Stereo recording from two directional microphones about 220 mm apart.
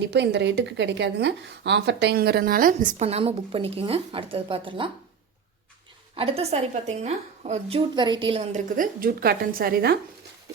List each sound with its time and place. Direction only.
0.1 s a woman's voice: 50° right (ahead or behind); by 4.9 s 25° right (ahead or behind)
6.1 s a woman's voice: 25° right (ahead or behind); by 10.0 s 45° right (ahead or behind)